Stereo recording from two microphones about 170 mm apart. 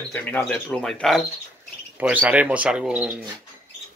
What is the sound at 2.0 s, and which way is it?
Speech, 10° right (ahead or behind).